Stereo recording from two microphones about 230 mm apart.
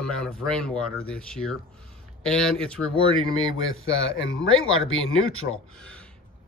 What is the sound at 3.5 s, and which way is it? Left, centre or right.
Speech, left.